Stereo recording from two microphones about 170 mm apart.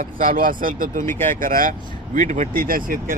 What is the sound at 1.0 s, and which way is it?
Speech, 15° left (ahead or behind).